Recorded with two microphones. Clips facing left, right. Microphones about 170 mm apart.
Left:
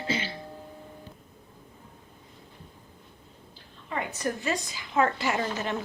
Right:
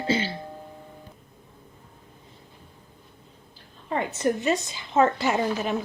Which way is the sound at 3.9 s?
25° right (ahead or behind).